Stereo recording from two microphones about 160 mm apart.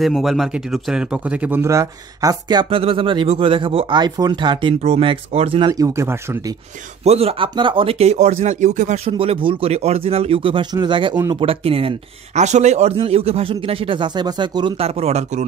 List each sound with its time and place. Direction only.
0.0 s speech: centre (ahead or behind); by 5.7 s 35° right (ahead or behind)
5.7 s speech: 20° right (ahead or behind)
7.1 s speech: 40° right (ahead or behind)
9.1 s speech: 35° right (ahead or behind)